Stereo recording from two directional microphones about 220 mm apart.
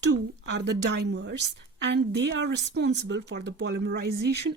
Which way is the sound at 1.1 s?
50° right (ahead or behind).